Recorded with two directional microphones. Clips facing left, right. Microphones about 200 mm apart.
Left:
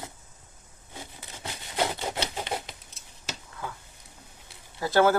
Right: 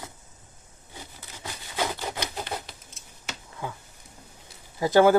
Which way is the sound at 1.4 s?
25° left (ahead or behind).